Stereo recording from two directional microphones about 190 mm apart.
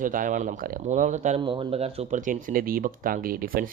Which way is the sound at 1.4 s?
25° right (ahead or behind).